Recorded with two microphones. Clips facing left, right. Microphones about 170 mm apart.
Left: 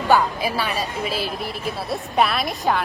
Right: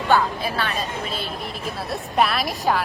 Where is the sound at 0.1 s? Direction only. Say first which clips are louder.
Left 2 dB; 10° left (ahead or behind).